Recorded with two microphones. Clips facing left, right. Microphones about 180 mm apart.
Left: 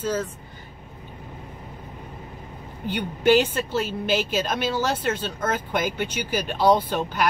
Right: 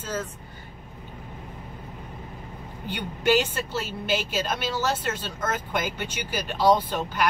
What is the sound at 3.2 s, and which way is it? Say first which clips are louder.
A woman's voice: left 4 dB; 55° left (ahead or behind).